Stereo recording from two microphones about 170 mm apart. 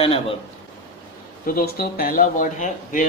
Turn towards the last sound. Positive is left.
turn(degrees=50)  # may be behind; listen again after turning